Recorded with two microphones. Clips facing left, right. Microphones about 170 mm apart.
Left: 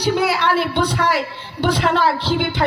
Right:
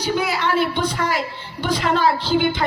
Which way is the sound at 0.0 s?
70° left (ahead or behind).